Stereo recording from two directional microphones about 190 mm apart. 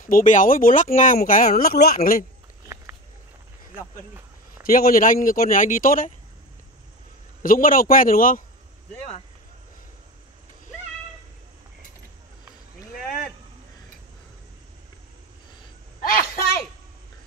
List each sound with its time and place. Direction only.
0.0 s speech: 45° left (ahead or behind)
4.6 s speech: 50° left (ahead or behind)
7.4 s speech: 45° left (ahead or behind)
16.0 s a sound: 50° left (ahead or behind)